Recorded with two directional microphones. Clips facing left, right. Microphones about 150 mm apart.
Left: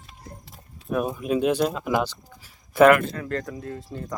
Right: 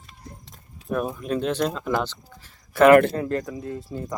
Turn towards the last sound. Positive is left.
turn(degrees=-5)  # may be behind; listen again after turning